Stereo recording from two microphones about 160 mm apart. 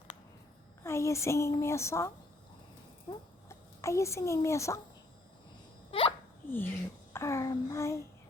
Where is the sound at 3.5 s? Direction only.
20° left (ahead or behind).